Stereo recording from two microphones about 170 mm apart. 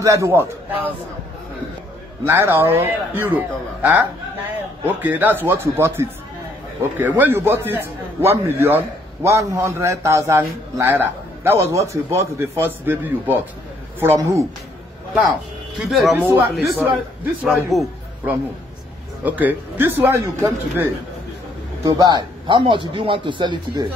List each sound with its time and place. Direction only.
0.0 s a man's voice: 20° right (ahead or behind)
2.2 s a man's voice: 15° right (ahead or behind)
16.6 s a man's voice: 10° right (ahead or behind); by 23.9 s 25° right (ahead or behind)